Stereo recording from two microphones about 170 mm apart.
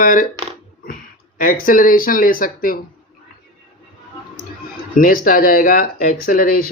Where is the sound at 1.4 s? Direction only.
55° left (ahead or behind).